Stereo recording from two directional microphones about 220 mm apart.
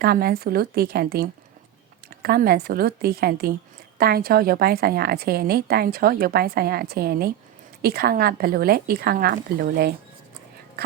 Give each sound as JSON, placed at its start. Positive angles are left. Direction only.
{"t": 0.0, "sound": "a woman's voice", "side_deg": -45}